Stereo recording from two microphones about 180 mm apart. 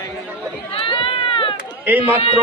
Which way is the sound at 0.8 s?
30° left (ahead or behind).